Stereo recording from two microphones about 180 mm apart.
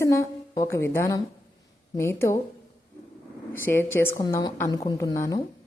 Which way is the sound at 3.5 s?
10° left (ahead or behind).